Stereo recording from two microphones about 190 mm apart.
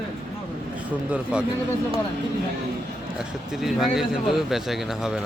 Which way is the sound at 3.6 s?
Centre (ahead or behind).